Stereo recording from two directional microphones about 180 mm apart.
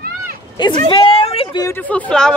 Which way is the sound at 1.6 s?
15° left (ahead or behind).